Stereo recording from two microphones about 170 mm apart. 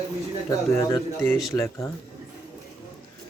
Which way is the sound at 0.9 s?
15° left (ahead or behind).